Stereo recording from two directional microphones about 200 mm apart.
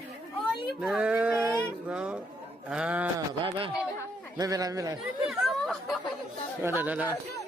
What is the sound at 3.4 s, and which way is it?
A man's voice, 25° right (ahead or behind).